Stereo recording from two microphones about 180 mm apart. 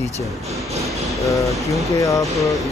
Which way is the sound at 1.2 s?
20° left (ahead or behind).